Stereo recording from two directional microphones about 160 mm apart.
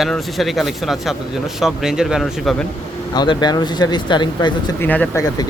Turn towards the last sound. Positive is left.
turn(degrees=15)  # may be behind; listen again after turning